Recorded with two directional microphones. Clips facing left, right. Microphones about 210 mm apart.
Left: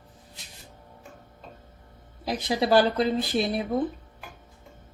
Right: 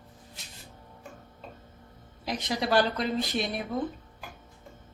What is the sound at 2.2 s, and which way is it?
Speech, 35° left (ahead or behind).